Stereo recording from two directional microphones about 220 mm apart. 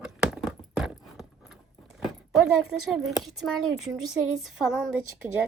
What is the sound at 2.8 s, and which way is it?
Speech, centre (ahead or behind).